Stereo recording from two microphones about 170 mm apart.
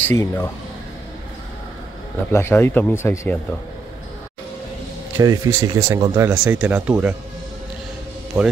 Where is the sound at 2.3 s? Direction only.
15° left (ahead or behind).